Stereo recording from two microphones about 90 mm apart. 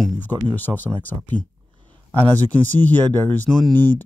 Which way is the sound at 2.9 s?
20° left (ahead or behind).